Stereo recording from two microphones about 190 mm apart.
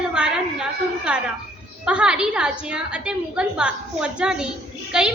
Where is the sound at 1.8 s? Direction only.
5° right (ahead or behind).